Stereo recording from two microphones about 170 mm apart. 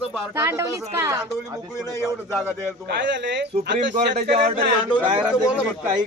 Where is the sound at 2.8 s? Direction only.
90° right.